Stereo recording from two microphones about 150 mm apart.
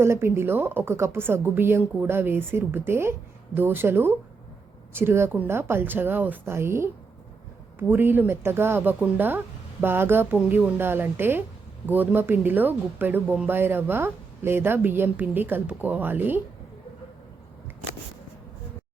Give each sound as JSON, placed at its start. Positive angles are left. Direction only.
{"t": 0.0, "sound": "a woman's voice", "side_deg": -15}